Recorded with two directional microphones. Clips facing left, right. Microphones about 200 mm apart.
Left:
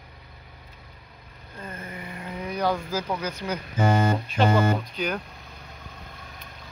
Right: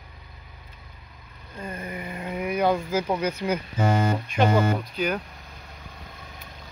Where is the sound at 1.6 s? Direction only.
15° right (ahead or behind).